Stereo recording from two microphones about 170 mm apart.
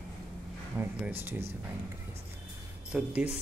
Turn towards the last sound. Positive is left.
turn(degrees=-10)  # may be behind; listen again after turning